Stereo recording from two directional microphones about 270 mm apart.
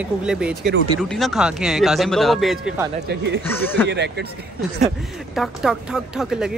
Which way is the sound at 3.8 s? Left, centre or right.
Right.